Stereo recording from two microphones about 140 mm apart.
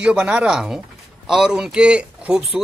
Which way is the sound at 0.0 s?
5° right (ahead or behind).